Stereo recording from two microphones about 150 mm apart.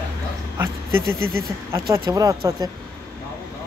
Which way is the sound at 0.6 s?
15° right (ahead or behind).